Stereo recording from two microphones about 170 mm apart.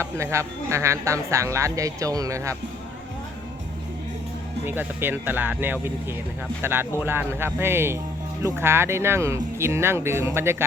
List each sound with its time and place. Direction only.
0.0 s speech: 15° right (ahead or behind)
4.6 s speech: 10° right (ahead or behind)